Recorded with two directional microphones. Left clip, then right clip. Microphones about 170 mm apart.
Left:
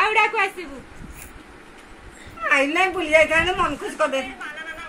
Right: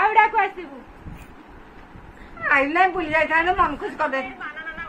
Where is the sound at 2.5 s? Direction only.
15° right (ahead or behind).